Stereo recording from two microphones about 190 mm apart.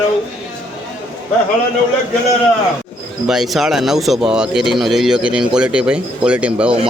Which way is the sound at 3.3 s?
Centre (ahead or behind).